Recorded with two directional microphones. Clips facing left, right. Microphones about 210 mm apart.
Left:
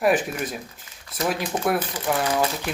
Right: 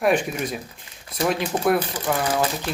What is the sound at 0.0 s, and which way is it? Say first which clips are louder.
Speech: right 1 dB; 5° left (ahead or behind).